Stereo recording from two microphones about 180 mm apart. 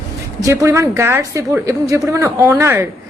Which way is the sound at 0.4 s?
15° right (ahead or behind).